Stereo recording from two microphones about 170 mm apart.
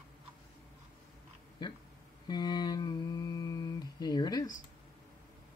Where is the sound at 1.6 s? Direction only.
25° left (ahead or behind).